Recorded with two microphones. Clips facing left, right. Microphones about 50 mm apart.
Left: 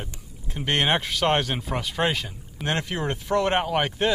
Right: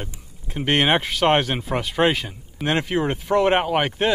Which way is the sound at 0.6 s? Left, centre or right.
Centre.